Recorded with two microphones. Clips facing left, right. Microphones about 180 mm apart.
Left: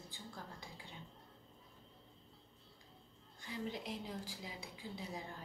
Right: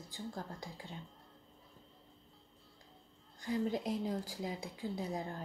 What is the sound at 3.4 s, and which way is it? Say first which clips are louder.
A woman's voice: right 9 dB; 45° right (ahead or behind).